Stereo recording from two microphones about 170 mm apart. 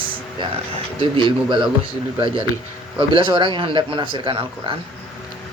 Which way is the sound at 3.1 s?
30° right (ahead or behind).